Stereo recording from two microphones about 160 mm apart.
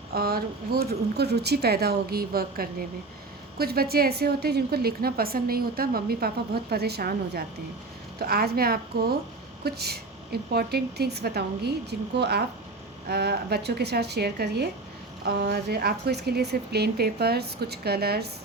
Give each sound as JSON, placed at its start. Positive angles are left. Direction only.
{"t": 0.1, "sound": "a woman's voice", "side_deg": -70}
{"t": 9.6, "sound": "speech", "side_deg": -85}